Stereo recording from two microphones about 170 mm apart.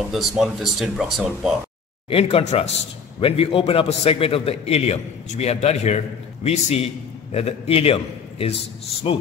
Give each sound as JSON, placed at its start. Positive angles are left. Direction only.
{"t": 0.1, "sound": "speech", "side_deg": 0}
{"t": 2.0, "sound": "a man's voice", "side_deg": 35}